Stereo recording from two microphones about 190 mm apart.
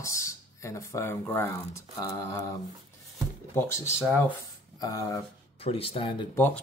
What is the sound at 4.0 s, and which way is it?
Speech, 5° left (ahead or behind).